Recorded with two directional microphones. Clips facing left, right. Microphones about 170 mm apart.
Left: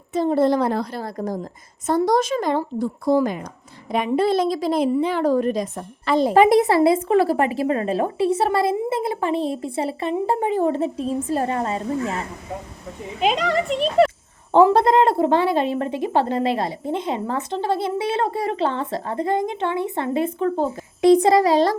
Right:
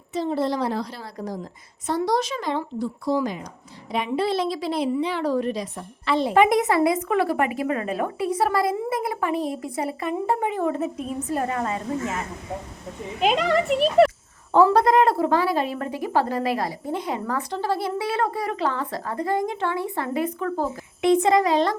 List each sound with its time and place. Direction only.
0.1 s a woman's voice: 50° left (ahead or behind); by 12.2 s 30° left (ahead or behind)
13.1 s a child's voice: centre (ahead or behind)
14.5 s a woman's voice: 25° left (ahead or behind)